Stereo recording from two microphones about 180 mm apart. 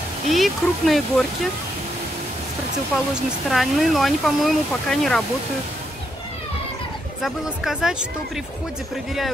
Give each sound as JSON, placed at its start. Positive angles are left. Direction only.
{"t": 0.3, "sound": "speech", "side_deg": 0}
{"t": 3.4, "sound": "speech", "side_deg": 0}
{"t": 7.2, "sound": "speech", "side_deg": 0}